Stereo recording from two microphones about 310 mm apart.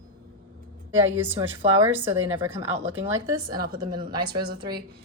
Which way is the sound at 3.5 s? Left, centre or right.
Right.